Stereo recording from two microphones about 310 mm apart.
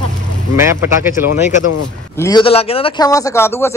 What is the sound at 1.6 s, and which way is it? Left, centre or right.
Speech, left.